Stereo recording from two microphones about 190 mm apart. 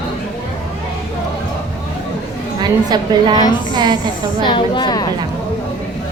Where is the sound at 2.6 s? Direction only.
20° right (ahead or behind).